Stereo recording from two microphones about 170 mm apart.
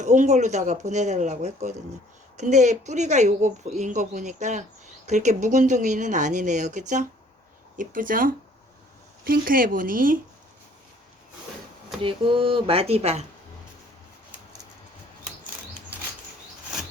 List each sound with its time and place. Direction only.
0.0 s speech: 45° right (ahead or behind)
12.0 s speech: 30° right (ahead or behind)